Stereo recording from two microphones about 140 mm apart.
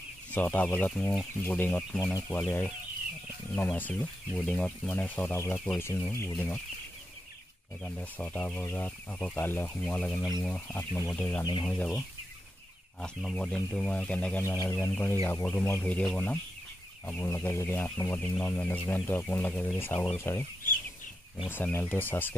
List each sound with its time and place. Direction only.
0.3 s speech: 10° left (ahead or behind)
7.8 s speech: 10° left (ahead or behind)
13.0 s speech: 5° left (ahead or behind)
21.5 s speech: 15° left (ahead or behind)